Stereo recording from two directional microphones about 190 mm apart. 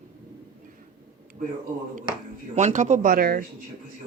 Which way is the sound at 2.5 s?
40° right (ahead or behind).